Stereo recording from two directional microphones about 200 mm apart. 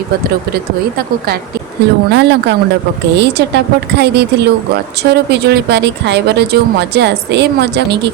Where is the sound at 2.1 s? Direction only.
60° right (ahead or behind).